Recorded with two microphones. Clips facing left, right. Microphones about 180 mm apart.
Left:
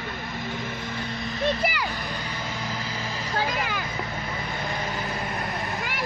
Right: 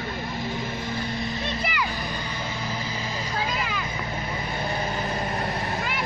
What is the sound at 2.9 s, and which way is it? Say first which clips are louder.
Vehicle: right 1 dB; 15° right (ahead or behind).